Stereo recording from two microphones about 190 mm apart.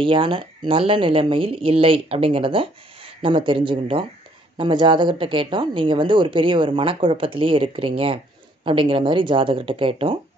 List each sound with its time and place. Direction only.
0.0 s speech: 25° right (ahead or behind)